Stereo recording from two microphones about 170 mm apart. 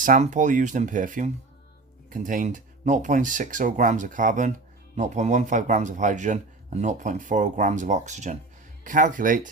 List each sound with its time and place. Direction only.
0.0 s speech: 50° right (ahead or behind)